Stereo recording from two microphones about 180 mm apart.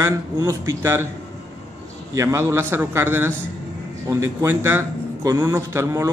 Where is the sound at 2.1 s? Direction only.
15° right (ahead or behind).